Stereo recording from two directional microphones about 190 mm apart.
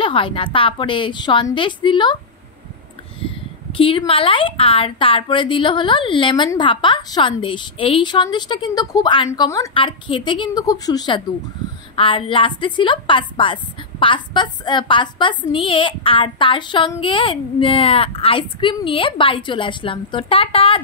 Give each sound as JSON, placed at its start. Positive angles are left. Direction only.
{"t": 0.0, "sound": "a woman's voice", "side_deg": 25}
{"t": 3.7, "sound": "a woman's voice", "side_deg": 30}